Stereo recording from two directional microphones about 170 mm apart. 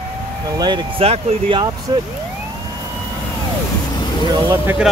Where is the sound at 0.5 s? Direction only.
25° right (ahead or behind).